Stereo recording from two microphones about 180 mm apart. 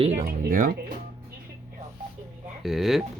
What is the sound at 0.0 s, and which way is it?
Music, 40° right (ahead or behind).